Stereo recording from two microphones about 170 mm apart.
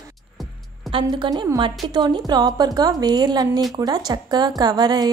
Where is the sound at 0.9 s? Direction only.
30° right (ahead or behind).